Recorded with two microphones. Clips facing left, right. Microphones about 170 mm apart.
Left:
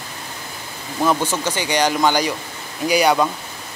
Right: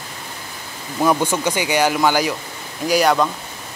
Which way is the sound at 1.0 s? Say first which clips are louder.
Right 2 dB; 10° right (ahead or behind).